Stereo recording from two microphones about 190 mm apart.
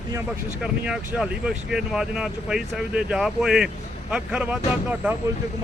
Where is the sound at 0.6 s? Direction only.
5° right (ahead or behind).